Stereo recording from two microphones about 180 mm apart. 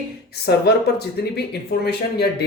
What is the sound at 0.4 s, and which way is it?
Speech, 65° left (ahead or behind).